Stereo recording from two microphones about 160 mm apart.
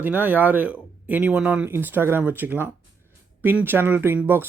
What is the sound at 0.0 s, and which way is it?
Speech, 10° right (ahead or behind).